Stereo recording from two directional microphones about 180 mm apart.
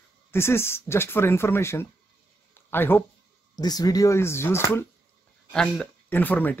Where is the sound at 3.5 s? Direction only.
20° left (ahead or behind).